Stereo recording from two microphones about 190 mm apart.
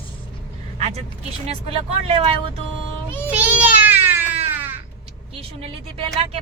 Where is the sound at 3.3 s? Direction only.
10° right (ahead or behind).